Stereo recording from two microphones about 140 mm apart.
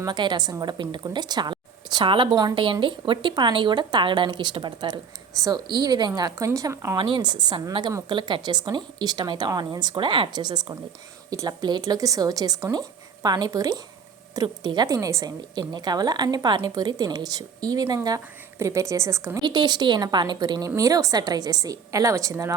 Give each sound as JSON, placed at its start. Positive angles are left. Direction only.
{"t": 0.0, "sound": "a woman's voice", "side_deg": -30}
{"t": 7.0, "sound": "a woman's voice", "side_deg": -35}
{"t": 19.5, "sound": "a woman's voice", "side_deg": -30}